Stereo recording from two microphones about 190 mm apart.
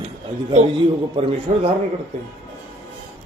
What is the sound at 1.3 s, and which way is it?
Speech, 30° right (ahead or behind).